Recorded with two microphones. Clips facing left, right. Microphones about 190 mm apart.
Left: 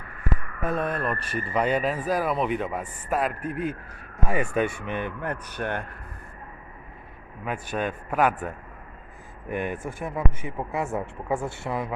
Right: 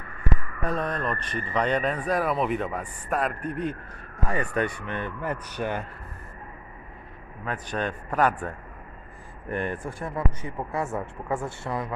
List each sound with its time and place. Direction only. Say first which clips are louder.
0.6 s speech: left 2 dB; 5° left (ahead or behind)
5.6 s speech: right 1 dB; 5° right (ahead or behind)
7.4 s speech: left 1 dB; 5° left (ahead or behind)